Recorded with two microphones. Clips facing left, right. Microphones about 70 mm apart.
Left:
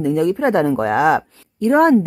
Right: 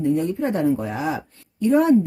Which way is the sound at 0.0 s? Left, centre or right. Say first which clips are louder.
Left 5 dB; left.